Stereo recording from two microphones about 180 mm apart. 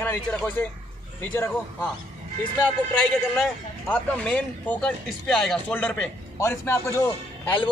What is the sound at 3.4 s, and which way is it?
Speech, 5° left (ahead or behind).